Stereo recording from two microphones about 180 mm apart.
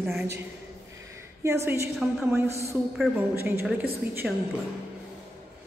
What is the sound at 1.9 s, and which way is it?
A woman's voice, centre (ahead or behind).